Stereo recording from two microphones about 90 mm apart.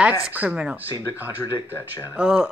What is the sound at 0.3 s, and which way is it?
Speech, 15° right (ahead or behind).